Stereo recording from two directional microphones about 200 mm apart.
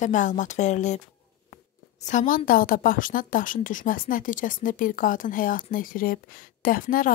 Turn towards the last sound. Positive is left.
turn(degrees=45)  # may be behind; listen again after turning